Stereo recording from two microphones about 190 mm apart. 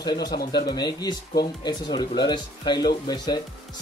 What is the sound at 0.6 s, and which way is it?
Speech, 25° left (ahead or behind).